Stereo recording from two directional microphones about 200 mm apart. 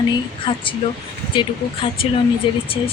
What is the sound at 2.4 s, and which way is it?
Speech, 25° left (ahead or behind).